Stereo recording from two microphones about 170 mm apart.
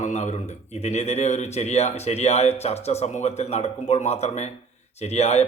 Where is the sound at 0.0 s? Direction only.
45° left (ahead or behind).